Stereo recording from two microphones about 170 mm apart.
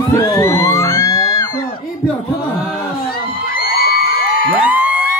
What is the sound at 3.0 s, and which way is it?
Whoop, 60° left (ahead or behind).